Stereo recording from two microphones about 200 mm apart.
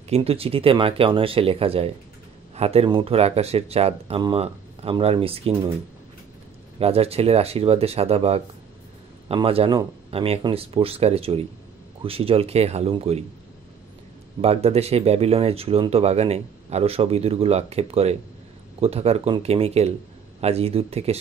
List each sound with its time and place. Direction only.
0.1 s speech: 30° right (ahead or behind)
6.8 s speech: 30° right (ahead or behind)
14.4 s speech: 30° right (ahead or behind)